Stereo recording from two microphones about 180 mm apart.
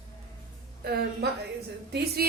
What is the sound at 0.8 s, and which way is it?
A woman's voice, 60° right (ahead or behind).